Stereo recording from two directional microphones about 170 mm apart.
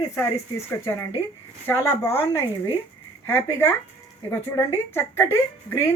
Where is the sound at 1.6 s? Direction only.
15° left (ahead or behind).